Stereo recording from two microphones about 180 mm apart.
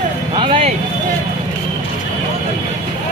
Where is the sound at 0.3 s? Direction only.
30° right (ahead or behind).